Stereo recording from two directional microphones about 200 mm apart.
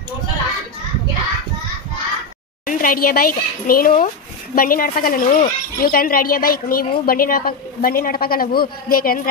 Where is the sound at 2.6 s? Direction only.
45° left (ahead or behind).